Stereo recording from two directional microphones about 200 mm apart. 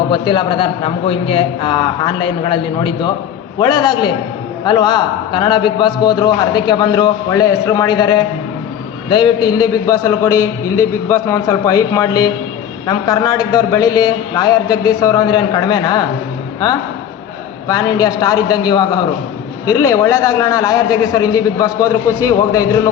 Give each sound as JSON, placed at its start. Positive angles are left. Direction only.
{"t": 0.1, "sound": "a man's voice", "side_deg": 25}
{"t": 17.7, "sound": "a man's voice", "side_deg": 15}